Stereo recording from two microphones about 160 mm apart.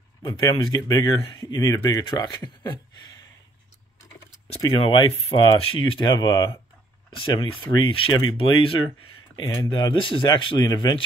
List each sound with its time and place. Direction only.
0.2 s speech: 25° left (ahead or behind)
4.6 s speech: 25° left (ahead or behind)